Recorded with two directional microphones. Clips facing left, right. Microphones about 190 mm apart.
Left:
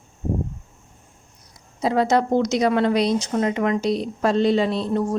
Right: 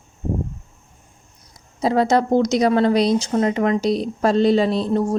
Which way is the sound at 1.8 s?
35° right (ahead or behind).